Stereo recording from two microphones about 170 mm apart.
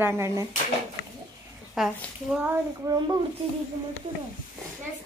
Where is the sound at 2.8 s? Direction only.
20° right (ahead or behind).